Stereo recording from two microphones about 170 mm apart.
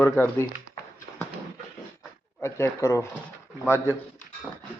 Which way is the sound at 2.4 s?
15° left (ahead or behind).